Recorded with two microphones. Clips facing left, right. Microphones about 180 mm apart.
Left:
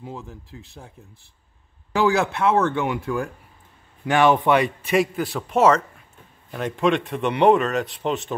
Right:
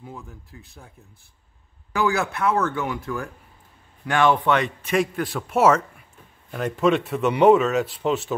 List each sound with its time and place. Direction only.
0.0 s speech: 25° left (ahead or behind); by 8.4 s 5° right (ahead or behind)